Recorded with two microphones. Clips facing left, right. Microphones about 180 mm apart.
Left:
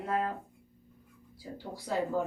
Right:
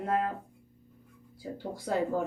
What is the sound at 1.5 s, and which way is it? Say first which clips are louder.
Speech: right 3 dB; 50° right (ahead or behind).